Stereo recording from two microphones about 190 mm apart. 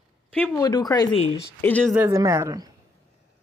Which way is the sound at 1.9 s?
15° right (ahead or behind).